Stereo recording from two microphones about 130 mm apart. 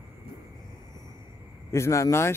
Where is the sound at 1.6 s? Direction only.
20° left (ahead or behind).